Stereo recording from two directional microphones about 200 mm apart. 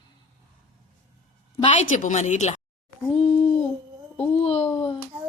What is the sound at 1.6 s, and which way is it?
Speech, 35° left (ahead or behind).